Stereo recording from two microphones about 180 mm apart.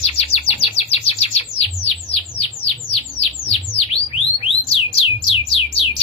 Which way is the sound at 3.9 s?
30° left (ahead or behind).